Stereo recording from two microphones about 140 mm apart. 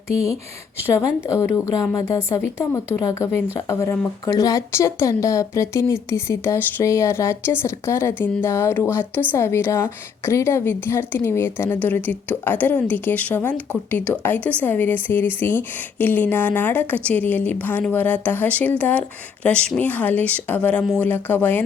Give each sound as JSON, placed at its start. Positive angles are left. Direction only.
{"t": 1.3, "sound": "a woman's voice", "side_deg": 20}